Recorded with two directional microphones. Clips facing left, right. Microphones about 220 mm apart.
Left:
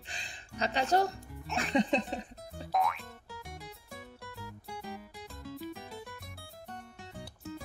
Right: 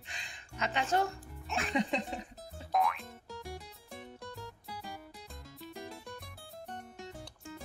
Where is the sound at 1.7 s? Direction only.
35° left (ahead or behind).